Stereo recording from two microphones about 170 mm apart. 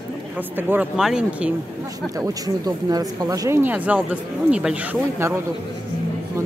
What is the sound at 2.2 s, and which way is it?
Speech, 20° right (ahead or behind).